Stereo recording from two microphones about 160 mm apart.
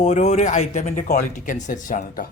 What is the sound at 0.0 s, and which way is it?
Speech, 45° left (ahead or behind).